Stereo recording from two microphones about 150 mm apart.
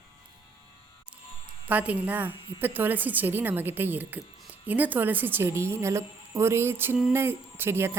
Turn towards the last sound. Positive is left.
turn(degrees=-15)  # may be behind; listen again after turning